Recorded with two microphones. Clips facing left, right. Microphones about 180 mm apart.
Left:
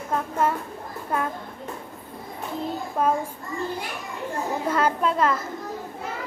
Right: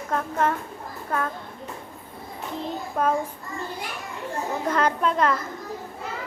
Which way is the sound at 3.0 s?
5° left (ahead or behind).